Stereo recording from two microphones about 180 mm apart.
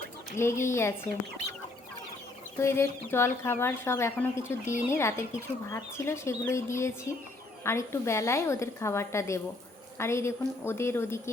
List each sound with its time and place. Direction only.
0.3 s speech: 15° left (ahead or behind)
2.6 s speech: 15° left (ahead or behind)